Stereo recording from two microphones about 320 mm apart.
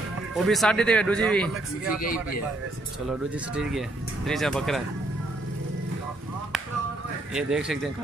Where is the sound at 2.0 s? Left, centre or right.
Left.